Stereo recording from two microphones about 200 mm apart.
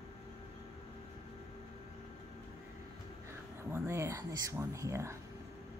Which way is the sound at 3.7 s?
15° right (ahead or behind).